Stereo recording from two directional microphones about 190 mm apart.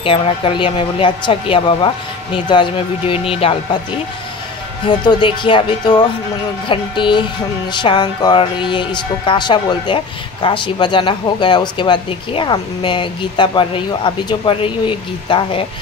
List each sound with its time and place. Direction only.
0.0 s speech: 30° left (ahead or behind)
4.8 s speech: 25° left (ahead or behind)